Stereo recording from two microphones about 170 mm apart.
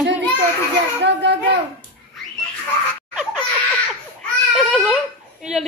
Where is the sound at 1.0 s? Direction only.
90° right.